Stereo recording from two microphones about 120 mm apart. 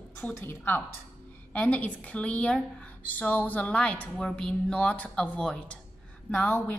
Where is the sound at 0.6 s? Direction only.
15° left (ahead or behind).